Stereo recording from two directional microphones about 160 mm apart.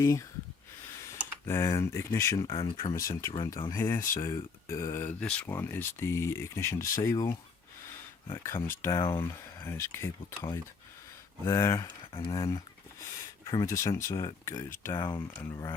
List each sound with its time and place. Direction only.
0.0 s speech: 20° left (ahead or behind)
2.6 s speech: 30° left (ahead or behind)
2.9 s speech: 20° left (ahead or behind)
3.3 s speech: 30° left (ahead or behind)